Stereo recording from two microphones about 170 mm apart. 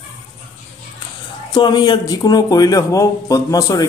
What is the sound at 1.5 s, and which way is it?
Speech, 25° left (ahead or behind).